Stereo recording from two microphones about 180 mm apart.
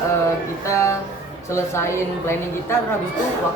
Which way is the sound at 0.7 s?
15° left (ahead or behind).